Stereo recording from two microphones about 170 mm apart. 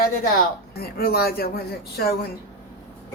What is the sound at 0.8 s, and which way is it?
Speech, 65° left (ahead or behind).